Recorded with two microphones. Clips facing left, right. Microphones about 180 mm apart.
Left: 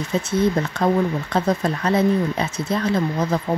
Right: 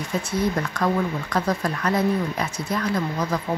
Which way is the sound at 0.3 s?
25° left (ahead or behind).